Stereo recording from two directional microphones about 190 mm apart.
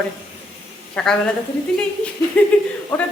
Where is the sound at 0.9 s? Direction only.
5° left (ahead or behind).